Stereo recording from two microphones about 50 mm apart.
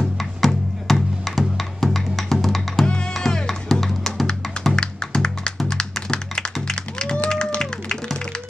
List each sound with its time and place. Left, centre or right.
0.0 s music: centre
4.7 s music: centre
6.7 s tap: centre
7.2 s music: centre